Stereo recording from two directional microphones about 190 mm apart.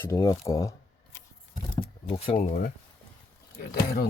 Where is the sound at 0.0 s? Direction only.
15° left (ahead or behind).